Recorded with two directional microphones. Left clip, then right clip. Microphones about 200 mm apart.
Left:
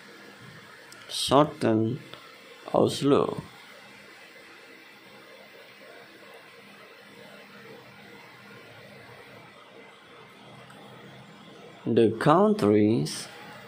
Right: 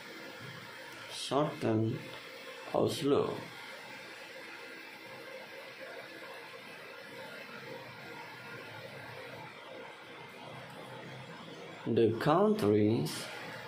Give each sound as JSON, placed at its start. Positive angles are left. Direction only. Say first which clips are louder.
{"t": 1.1, "sound": "speech", "louder": "left 11 dB", "side_deg": 40}
{"t": 11.9, "sound": "speech", "louder": "left 7 dB", "side_deg": 35}